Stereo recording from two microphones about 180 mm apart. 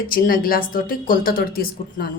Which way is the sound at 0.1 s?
55° left (ahead or behind).